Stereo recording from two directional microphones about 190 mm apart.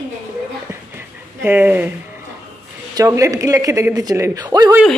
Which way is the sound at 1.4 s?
10° right (ahead or behind).